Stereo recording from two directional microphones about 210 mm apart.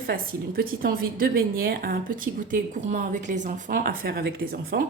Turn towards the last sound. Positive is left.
turn(degrees=-45)  # may be behind; listen again after turning